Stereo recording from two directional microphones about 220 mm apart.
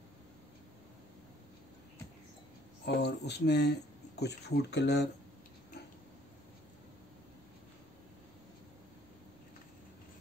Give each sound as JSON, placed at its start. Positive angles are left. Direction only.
{"t": 2.8, "sound": "speech", "side_deg": 50}